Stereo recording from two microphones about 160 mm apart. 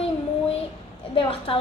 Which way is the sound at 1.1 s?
35° left (ahead or behind).